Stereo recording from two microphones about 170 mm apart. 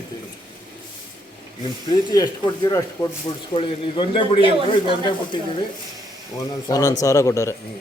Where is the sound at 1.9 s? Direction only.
25° left (ahead or behind).